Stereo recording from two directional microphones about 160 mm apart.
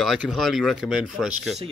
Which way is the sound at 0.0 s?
Centre (ahead or behind).